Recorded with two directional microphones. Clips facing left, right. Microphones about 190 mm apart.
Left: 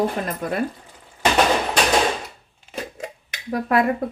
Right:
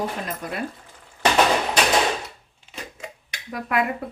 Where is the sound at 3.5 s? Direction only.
40° left (ahead or behind).